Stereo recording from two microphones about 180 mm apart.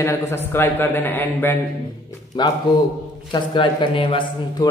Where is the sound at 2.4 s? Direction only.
25° left (ahead or behind).